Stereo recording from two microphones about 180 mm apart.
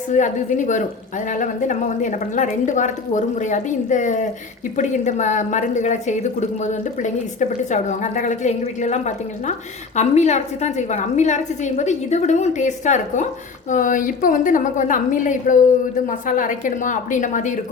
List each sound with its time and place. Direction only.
0.1 s a woman's voice: 45° left (ahead or behind)